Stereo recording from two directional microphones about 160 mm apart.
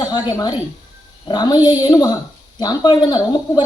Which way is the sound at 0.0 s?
25° left (ahead or behind).